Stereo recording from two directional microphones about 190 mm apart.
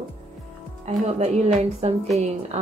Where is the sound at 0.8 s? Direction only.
35° right (ahead or behind).